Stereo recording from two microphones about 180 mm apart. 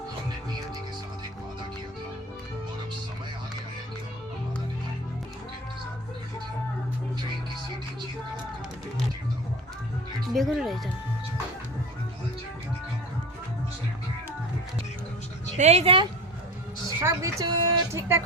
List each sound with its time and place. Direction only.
10.3 s speech: centre (ahead or behind)
15.5 s speech: 40° right (ahead or behind)
17.0 s speech: 15° right (ahead or behind)